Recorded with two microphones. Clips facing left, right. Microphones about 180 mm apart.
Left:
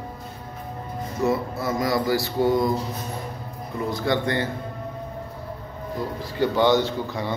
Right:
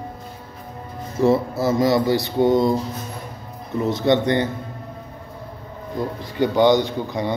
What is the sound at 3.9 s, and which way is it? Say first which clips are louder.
Speech: right 6 dB; 25° right (ahead or behind).